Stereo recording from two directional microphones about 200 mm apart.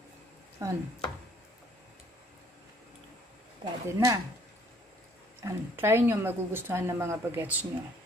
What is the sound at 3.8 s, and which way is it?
Speech, 15° right (ahead or behind).